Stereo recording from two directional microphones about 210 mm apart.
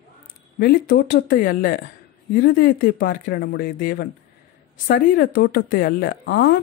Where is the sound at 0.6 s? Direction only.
45° left (ahead or behind).